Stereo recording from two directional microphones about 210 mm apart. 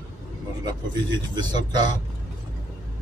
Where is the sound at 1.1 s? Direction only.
20° right (ahead or behind).